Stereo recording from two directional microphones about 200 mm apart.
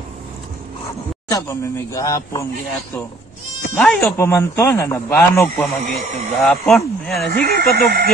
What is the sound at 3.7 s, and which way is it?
Speech, 5° left (ahead or behind).